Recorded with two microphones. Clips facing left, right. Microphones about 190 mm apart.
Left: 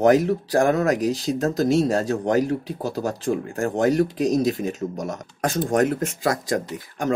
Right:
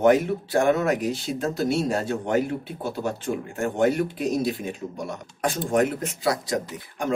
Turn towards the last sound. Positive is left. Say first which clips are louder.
# left 3 dB
turn(degrees=45)  # may be behind; listen again after turning